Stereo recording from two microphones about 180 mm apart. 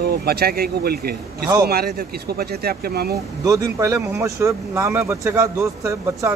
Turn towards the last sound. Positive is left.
turn(degrees=-15)  # may be behind; listen again after turning